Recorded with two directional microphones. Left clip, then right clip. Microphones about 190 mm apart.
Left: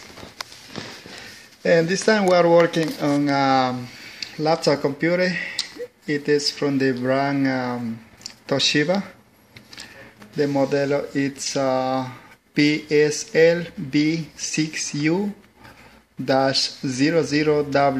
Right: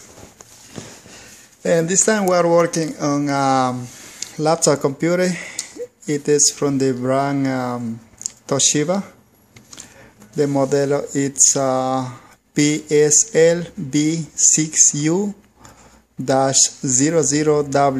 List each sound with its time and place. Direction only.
1.6 s speech: 15° right (ahead or behind)
4.2 s speech: 30° right (ahead or behind); by 9.0 s 10° right (ahead or behind)
10.3 s speech: 20° right (ahead or behind)
16.3 s speech: 25° right (ahead or behind)